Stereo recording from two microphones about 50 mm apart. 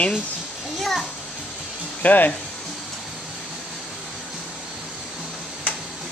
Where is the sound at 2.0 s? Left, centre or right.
Left.